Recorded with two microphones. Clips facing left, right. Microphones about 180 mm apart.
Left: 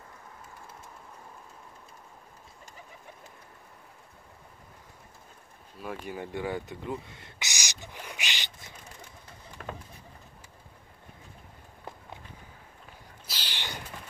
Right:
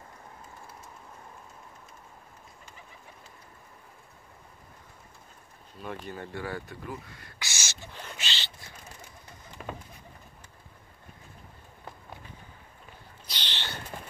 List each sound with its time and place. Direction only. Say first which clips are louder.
5.8 s speech: left 1 dB; 10° left (ahead or behind)
9.6 s vehicle: right 1 dB; 5° right (ahead or behind)
13.3 s a sound: right 1 dB; 10° left (ahead or behind)